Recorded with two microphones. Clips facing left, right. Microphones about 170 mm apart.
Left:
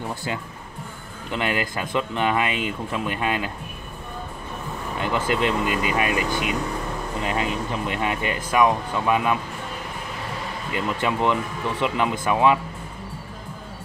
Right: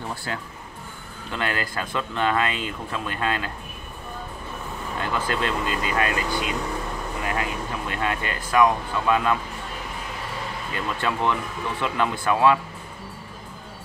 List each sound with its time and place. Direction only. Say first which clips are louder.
1.3 s speech: left 3 dB; 15° left (ahead or behind)
5.0 s speech: left 4 dB; 20° left (ahead or behind)
10.7 s speech: left 3 dB; 15° left (ahead or behind)